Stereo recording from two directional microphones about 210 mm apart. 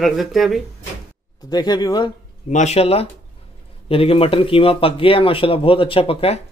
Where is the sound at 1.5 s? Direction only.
20° left (ahead or behind).